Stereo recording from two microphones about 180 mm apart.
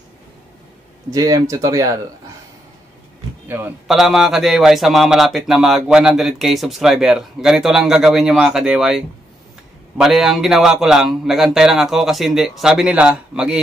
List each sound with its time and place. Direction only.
1.1 s speech: 20° right (ahead or behind)
3.4 s a man's voice: 10° right (ahead or behind)
3.8 s a man's voice: centre (ahead or behind)